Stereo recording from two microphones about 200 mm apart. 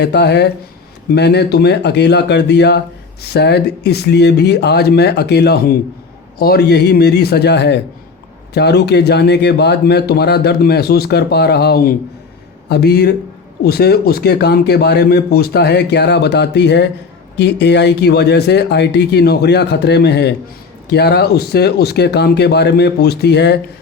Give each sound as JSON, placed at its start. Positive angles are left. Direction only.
{"t": 0.0, "sound": "a man's voice", "side_deg": 55}